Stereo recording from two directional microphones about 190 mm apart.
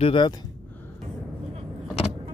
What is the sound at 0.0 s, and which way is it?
Speech, 25° left (ahead or behind).